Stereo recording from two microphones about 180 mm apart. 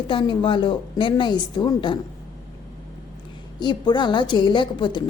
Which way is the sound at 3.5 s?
25° left (ahead or behind).